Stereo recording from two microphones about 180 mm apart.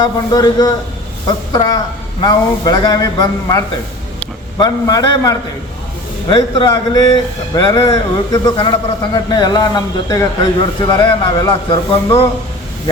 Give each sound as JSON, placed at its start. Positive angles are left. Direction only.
{"t": 0.0, "sound": "a man's voice", "side_deg": 20}